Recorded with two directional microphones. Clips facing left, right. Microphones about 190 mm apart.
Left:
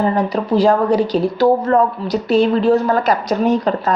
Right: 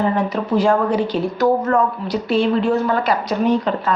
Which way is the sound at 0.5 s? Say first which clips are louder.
Left 3 dB; 35° left (ahead or behind).